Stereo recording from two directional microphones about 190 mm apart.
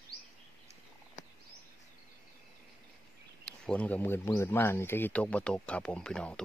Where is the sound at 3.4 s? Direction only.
5° left (ahead or behind).